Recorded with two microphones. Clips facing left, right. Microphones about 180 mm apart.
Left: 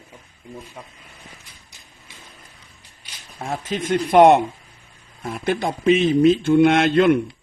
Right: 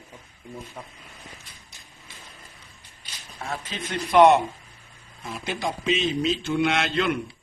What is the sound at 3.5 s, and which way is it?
Speech, 50° left (ahead or behind).